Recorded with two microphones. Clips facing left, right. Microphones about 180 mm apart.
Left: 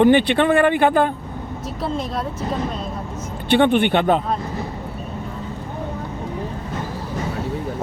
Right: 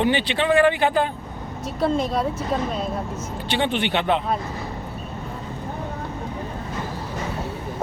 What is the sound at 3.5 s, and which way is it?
Speech, 55° left (ahead or behind).